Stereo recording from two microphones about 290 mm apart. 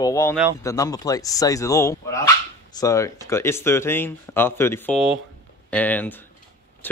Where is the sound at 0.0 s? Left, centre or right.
Centre.